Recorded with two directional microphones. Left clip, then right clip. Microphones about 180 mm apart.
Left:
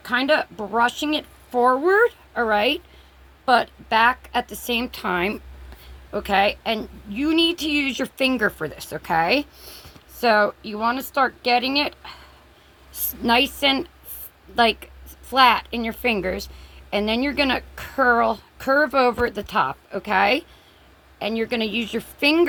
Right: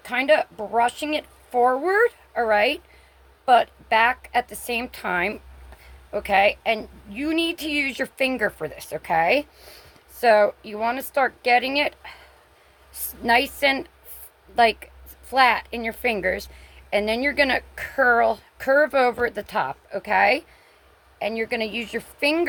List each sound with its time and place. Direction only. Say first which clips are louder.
0.0 s a woman's voice: even; 35° right (ahead or behind)
21.5 s a woman's voice: left 2 dB; 35° right (ahead or behind)